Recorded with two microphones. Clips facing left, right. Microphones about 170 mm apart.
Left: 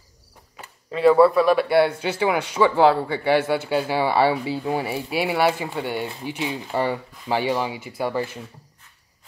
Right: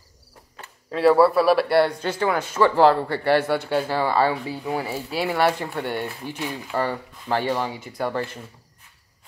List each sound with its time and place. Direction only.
0.8 s a man's voice: centre (ahead or behind)
4.3 s speech: 20° left (ahead or behind); by 6.0 s centre (ahead or behind)
6.0 s speech: 20° left (ahead or behind)